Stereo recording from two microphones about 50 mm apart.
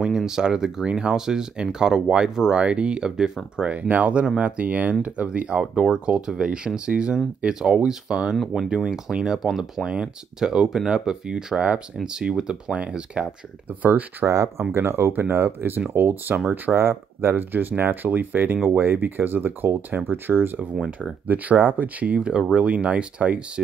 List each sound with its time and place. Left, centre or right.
0.0 s speech: centre
10.4 s speech: centre
13.7 s speech: right
14.2 s speech: right
14.6 s speech: right
15.1 s speech: right